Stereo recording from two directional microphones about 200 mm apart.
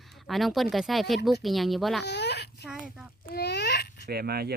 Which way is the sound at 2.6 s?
5° right (ahead or behind).